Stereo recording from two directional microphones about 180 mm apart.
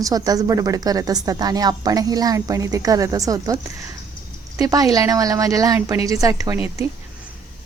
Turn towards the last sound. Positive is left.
turn(degrees=-15)  # may be behind; listen again after turning